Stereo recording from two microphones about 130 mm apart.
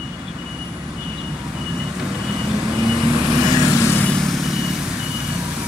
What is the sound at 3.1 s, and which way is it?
Vehicle, 25° right (ahead or behind).